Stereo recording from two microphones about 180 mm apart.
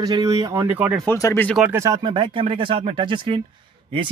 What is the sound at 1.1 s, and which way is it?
Speech, 15° left (ahead or behind).